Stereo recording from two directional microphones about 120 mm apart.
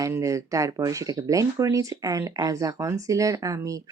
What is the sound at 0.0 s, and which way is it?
Speech, 25° right (ahead or behind).